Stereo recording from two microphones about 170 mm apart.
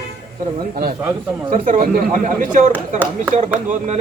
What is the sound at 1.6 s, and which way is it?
Speech, 55° right (ahead or behind).